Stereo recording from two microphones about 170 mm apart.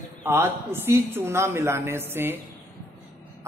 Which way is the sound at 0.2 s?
15° right (ahead or behind).